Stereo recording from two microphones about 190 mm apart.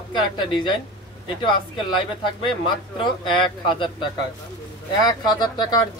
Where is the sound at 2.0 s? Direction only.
25° left (ahead or behind).